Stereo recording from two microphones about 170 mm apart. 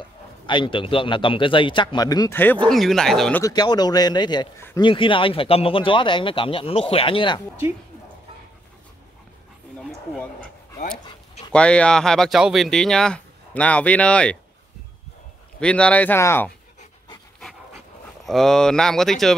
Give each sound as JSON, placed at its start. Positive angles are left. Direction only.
{"t": 0.0, "sound": "a man's voice", "side_deg": 30}
{"t": 3.4, "sound": "a man's voice", "side_deg": 25}
{"t": 9.8, "sound": "a sound", "side_deg": 0}
{"t": 11.5, "sound": "speech", "side_deg": 5}
{"t": 15.6, "sound": "speech", "side_deg": 5}
{"t": 18.2, "sound": "speech", "side_deg": 0}